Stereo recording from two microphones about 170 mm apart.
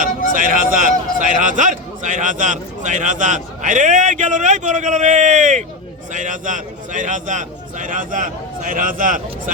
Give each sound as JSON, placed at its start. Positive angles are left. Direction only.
{"t": 0.3, "sound": "a man's voice", "side_deg": -50}